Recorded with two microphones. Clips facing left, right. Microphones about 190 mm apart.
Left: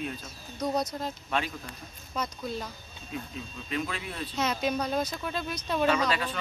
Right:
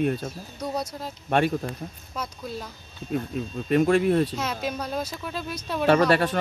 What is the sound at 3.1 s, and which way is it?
Speech, 50° right (ahead or behind).